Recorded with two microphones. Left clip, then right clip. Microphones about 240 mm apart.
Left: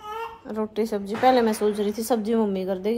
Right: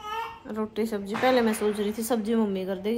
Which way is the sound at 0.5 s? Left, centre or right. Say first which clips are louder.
Left 5 dB; centre.